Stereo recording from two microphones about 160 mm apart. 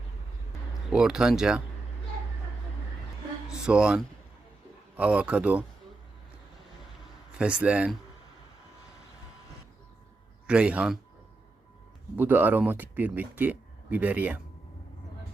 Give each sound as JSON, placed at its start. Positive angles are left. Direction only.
{"t": 0.9, "sound": "speech", "side_deg": -5}
{"t": 3.5, "sound": "speech", "side_deg": -5}
{"t": 7.3, "sound": "speech", "side_deg": -5}
{"t": 10.4, "sound": "speech", "side_deg": -5}
{"t": 12.1, "sound": "speech", "side_deg": -10}